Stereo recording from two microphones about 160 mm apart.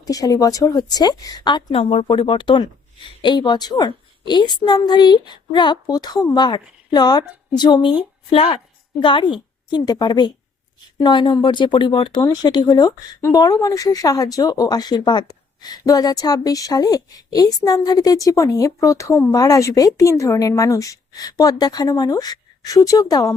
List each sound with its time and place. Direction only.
0.0 s speech: 20° left (ahead or behind)
1.7 s speech: 40° left (ahead or behind); by 23.3 s 20° left (ahead or behind)